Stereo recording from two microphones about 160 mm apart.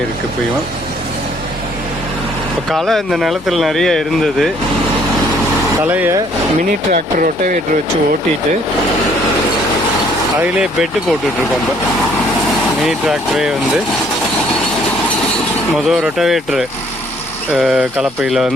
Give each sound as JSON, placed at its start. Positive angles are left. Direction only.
{"t": 2.6, "sound": "speech", "side_deg": 0}
{"t": 5.8, "sound": "speech", "side_deg": -10}
{"t": 6.7, "sound": "speech", "side_deg": -60}
{"t": 10.4, "sound": "speech", "side_deg": -5}
{"t": 12.8, "sound": "speech", "side_deg": 0}
{"t": 15.7, "sound": "speech", "side_deg": -5}